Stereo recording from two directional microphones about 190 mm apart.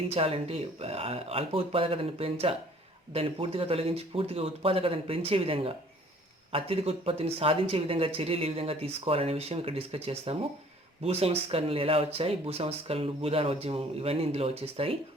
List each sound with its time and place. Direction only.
0.1 s speech: 30° right (ahead or behind)